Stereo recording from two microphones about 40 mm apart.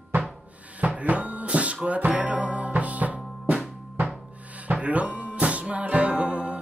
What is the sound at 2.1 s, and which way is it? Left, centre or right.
Music, right.